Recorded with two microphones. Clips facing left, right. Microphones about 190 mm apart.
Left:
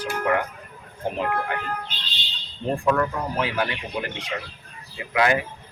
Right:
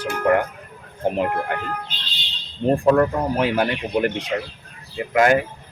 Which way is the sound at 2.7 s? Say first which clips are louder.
Right 6 dB; 40° right (ahead or behind).